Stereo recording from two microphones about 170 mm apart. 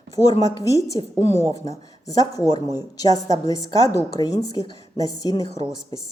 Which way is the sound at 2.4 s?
20° left (ahead or behind).